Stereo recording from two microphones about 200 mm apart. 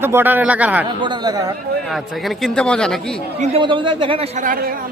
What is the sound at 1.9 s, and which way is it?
A man's voice, centre (ahead or behind).